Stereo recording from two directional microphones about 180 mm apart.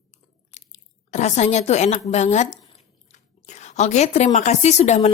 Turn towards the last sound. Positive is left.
turn(degrees=40)  # may be behind; listen again after turning